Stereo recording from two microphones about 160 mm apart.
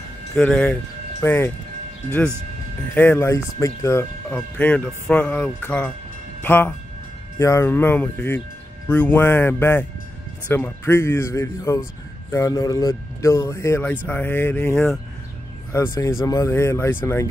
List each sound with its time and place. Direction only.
0.4 s speech: 10° left (ahead or behind)